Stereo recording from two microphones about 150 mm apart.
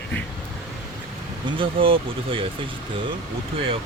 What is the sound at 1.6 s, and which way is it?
Speech, 35° right (ahead or behind).